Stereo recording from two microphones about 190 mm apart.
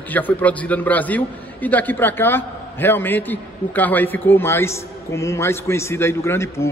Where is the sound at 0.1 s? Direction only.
10° left (ahead or behind).